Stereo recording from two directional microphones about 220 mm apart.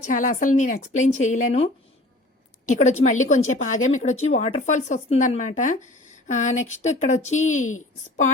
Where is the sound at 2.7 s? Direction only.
30° left (ahead or behind).